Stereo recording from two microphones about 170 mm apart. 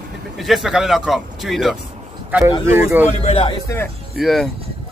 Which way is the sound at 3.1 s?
35° left (ahead or behind).